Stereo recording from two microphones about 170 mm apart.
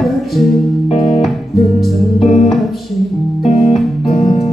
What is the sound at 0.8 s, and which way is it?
Music, 40° left (ahead or behind).